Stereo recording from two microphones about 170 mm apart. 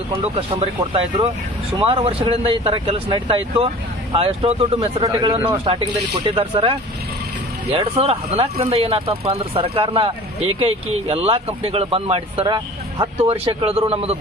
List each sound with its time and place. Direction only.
0.3 s speech: 30° right (ahead or behind)